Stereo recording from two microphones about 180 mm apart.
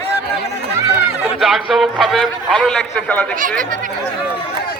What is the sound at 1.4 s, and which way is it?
A man's voice, centre (ahead or behind).